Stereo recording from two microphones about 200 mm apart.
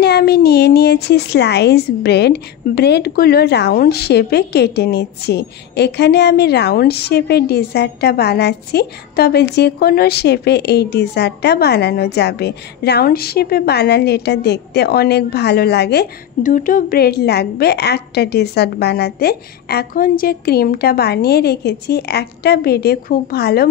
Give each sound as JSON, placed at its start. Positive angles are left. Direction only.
{"t": 0.0, "sound": "a woman's voice", "side_deg": 55}